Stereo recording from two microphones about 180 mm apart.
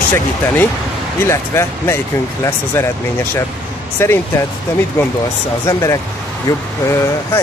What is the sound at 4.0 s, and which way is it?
Speech, 15° left (ahead or behind).